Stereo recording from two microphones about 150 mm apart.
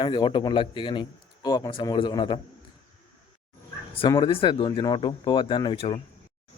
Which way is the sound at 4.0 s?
30° left (ahead or behind).